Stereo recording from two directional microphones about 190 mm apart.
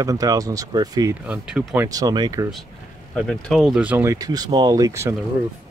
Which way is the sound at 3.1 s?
5° left (ahead or behind).